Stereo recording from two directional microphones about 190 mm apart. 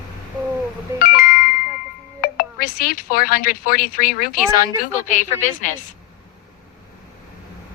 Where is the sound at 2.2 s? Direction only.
50° left (ahead or behind).